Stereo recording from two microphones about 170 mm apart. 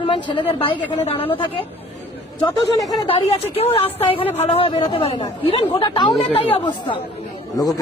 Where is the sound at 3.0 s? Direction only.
35° left (ahead or behind).